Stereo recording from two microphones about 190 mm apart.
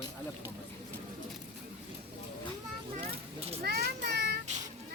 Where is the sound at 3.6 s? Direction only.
55° right (ahead or behind).